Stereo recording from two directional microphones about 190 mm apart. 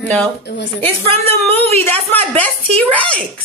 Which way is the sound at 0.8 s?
10° left (ahead or behind).